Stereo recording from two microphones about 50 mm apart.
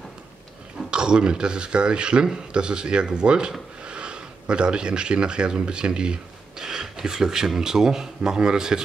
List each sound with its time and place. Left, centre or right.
0.8 s speech: centre